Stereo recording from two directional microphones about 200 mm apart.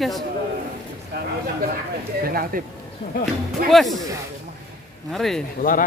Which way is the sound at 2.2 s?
50° right (ahead or behind).